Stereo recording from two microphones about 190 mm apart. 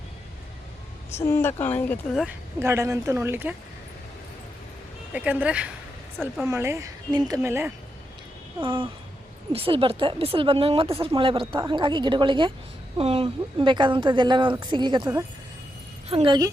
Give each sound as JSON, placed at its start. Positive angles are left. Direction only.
{"t": 1.1, "sound": "speech", "side_deg": 15}
{"t": 2.6, "sound": "speech", "side_deg": -15}
{"t": 5.1, "sound": "speech", "side_deg": -5}
{"t": 6.5, "sound": "speech", "side_deg": -15}
{"t": 8.6, "sound": "a woman's voice", "side_deg": -25}